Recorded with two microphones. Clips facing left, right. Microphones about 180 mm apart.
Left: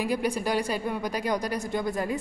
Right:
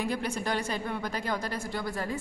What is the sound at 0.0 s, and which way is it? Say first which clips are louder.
A woman's voice: left 4 dB; 10° left (ahead or behind).